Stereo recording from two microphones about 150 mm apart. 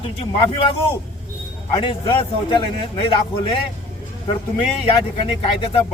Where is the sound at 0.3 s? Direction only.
40° left (ahead or behind).